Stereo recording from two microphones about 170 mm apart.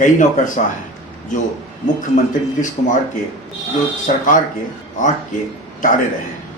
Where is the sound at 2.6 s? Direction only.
45° left (ahead or behind).